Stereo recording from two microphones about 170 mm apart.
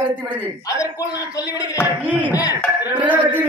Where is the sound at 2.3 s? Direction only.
20° left (ahead or behind).